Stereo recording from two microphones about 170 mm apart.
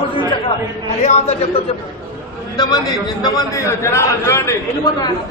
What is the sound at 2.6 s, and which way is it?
A man's voice, 25° left (ahead or behind).